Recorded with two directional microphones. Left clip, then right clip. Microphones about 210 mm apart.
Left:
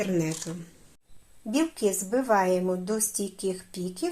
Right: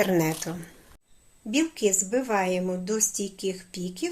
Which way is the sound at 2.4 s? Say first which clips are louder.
Left 2 dB; centre (ahead or behind).